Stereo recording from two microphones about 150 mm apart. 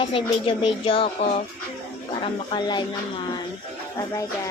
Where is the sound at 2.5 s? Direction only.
30° left (ahead or behind).